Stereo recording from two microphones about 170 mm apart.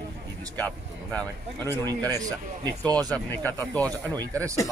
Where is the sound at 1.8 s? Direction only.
20° right (ahead or behind).